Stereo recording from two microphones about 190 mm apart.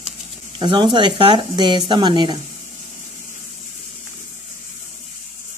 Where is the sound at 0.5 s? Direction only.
25° right (ahead or behind).